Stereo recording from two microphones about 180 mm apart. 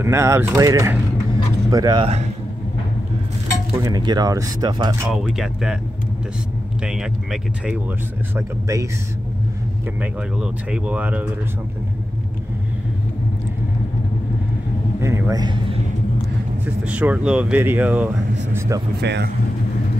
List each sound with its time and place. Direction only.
0.0 s speech: 15° right (ahead or behind)
3.7 s speech: 20° right (ahead or behind)
5.1 s speech: centre (ahead or behind)
6.8 s speech: 5° right (ahead or behind)
8.4 s speech: 15° right (ahead or behind)
9.9 s speech: 5° right (ahead or behind)
15.0 s a man's voice: 15° right (ahead or behind)
16.6 s speech: 10° right (ahead or behind)
18.9 s speech: 70° right (ahead or behind)